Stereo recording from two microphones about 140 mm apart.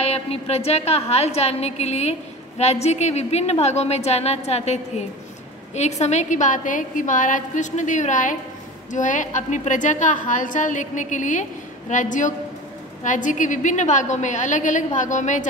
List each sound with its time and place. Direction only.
0.0 s a woman's voice: 45° left (ahead or behind)